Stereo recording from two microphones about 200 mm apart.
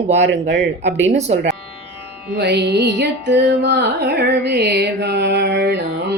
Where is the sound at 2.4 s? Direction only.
55° right (ahead or behind).